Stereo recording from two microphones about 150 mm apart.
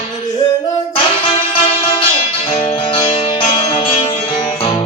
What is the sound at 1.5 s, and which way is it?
Music, 35° left (ahead or behind).